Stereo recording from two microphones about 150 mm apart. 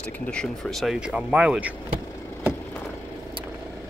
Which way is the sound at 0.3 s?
5° left (ahead or behind).